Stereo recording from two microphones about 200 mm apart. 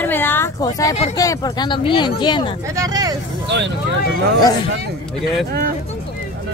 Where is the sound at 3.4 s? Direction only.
60° right (ahead or behind).